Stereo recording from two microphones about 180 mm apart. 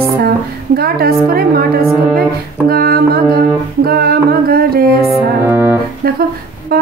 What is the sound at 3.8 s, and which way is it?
Music, 60° right (ahead or behind).